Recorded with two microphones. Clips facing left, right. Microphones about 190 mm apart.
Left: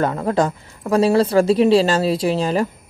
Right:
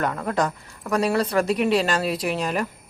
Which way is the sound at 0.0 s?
30° left (ahead or behind).